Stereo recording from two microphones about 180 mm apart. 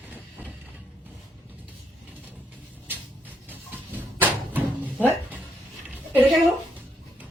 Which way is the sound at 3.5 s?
10° right (ahead or behind).